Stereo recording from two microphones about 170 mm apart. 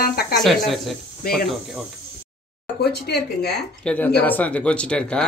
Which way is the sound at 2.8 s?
70° left (ahead or behind).